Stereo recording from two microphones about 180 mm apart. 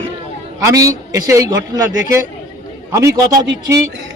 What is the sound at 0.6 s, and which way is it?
A man's voice, 20° right (ahead or behind).